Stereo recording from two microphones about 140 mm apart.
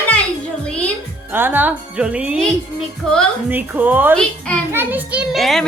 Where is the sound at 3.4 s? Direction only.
10° right (ahead or behind).